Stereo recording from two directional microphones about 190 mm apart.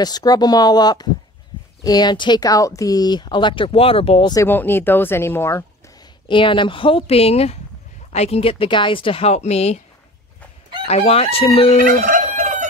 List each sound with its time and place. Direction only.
0.0 s speech: 20° left (ahead or behind)
6.2 s speech: 25° left (ahead or behind)
10.9 s speech: 35° left (ahead or behind)
11.8 s fowl: 45° right (ahead or behind)